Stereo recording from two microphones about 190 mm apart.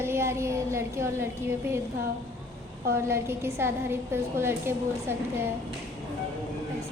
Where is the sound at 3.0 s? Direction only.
15° right (ahead or behind).